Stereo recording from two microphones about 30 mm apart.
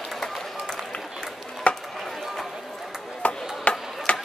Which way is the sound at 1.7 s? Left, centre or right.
Left.